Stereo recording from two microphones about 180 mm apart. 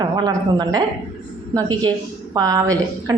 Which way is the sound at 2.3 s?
20° right (ahead or behind).